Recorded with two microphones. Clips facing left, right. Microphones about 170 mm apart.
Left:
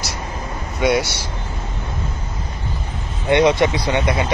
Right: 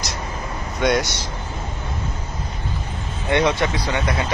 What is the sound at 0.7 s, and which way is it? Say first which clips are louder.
Speech: left 2 dB; 10° left (ahead or behind).